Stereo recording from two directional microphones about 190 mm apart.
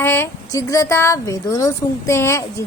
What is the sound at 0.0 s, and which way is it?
Speech, 10° left (ahead or behind).